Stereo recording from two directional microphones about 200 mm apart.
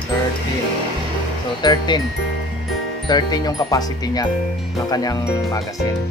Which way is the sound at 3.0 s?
20° left (ahead or behind).